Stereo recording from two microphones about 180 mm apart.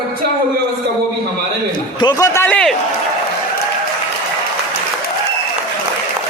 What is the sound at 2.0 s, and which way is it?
Speech, 20° left (ahead or behind).